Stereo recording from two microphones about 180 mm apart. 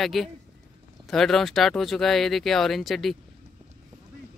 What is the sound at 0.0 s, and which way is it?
Speech, centre (ahead or behind).